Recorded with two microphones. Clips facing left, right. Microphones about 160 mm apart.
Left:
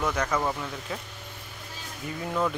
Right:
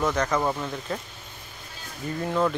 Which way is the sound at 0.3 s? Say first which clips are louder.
Right 3 dB; 10° right (ahead or behind).